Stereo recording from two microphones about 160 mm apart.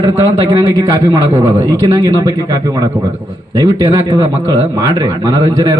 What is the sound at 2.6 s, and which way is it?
A man's voice, 20° right (ahead or behind).